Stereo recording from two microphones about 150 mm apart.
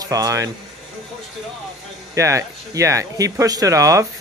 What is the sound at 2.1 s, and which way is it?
A man's voice, 20° right (ahead or behind).